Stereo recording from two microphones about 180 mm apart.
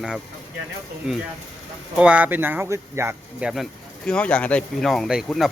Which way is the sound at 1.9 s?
5° right (ahead or behind).